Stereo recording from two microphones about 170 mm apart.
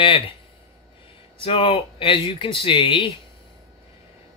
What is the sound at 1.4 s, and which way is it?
Speech, 30° left (ahead or behind).